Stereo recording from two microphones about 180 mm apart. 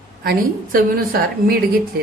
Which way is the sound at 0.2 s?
55° right (ahead or behind).